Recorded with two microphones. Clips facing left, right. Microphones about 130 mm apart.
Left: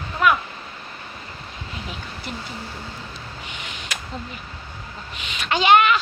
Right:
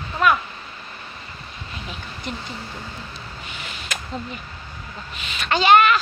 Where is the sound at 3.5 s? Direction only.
15° left (ahead or behind).